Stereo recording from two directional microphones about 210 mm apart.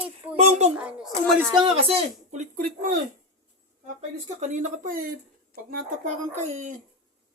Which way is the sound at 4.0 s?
35° right (ahead or behind).